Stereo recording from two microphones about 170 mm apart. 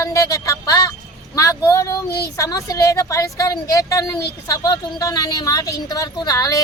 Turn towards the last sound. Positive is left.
turn(degrees=20)  # may be behind; listen again after turning